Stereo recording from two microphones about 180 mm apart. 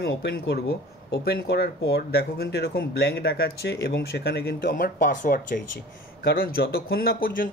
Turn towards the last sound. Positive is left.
turn(degrees=55)  # may be behind; listen again after turning